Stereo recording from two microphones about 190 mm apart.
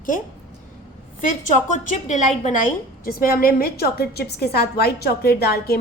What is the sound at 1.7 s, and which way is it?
A woman's voice, 40° left (ahead or behind).